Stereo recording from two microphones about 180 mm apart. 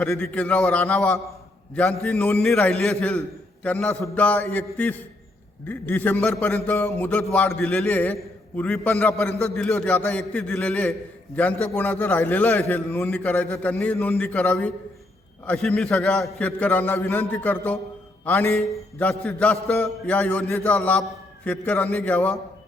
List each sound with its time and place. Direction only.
0.0 s a man's voice: 5° left (ahead or behind)